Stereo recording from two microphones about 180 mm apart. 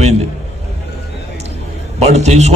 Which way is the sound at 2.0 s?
40° right (ahead or behind).